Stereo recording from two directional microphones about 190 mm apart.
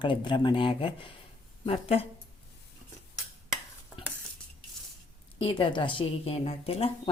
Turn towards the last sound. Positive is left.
turn(degrees=30)  # may be behind; listen again after turning